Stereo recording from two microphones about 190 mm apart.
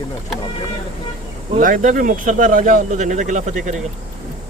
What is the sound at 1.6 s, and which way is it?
Speech, 45° right (ahead or behind).